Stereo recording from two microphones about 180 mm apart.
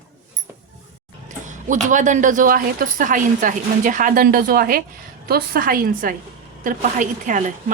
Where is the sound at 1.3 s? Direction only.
45° right (ahead or behind).